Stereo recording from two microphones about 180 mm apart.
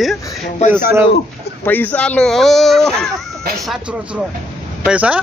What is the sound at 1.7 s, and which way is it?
Speech, 10° left (ahead or behind).